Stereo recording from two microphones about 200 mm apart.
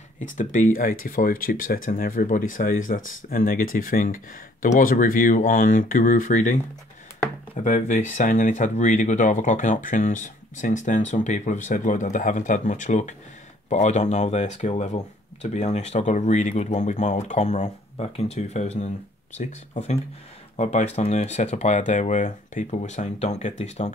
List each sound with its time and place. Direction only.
0.4 s speech: 40° left (ahead or behind)